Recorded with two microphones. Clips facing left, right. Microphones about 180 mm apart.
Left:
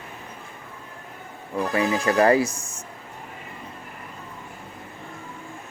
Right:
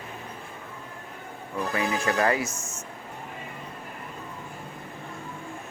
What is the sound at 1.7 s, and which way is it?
Speech, 30° left (ahead or behind).